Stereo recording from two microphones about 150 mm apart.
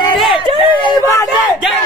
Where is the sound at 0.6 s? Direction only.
35° left (ahead or behind).